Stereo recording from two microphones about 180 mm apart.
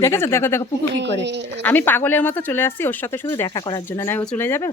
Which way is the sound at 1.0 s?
75° right (ahead or behind).